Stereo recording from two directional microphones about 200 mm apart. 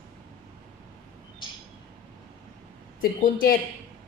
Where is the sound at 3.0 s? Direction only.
45° left (ahead or behind).